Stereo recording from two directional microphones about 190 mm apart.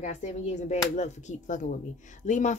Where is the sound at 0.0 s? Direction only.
35° left (ahead or behind).